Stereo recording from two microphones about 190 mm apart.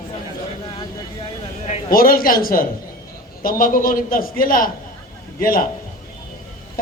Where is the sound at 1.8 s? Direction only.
50° left (ahead or behind).